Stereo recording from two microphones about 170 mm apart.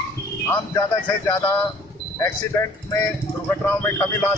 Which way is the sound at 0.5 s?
20° left (ahead or behind).